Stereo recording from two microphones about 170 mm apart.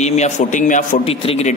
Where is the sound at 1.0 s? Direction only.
40° left (ahead or behind).